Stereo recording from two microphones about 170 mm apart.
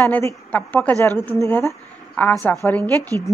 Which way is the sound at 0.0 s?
15° left (ahead or behind).